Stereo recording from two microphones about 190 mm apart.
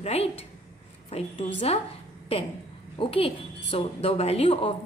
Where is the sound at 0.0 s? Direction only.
35° left (ahead or behind).